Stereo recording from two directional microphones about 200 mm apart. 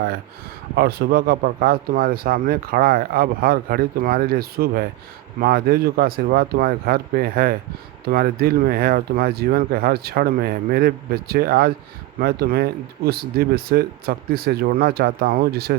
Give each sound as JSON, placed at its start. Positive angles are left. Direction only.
{"t": 0.8, "sound": "speech", "side_deg": -50}